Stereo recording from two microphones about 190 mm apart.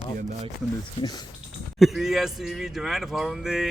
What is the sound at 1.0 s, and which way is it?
Speech, 20° left (ahead or behind).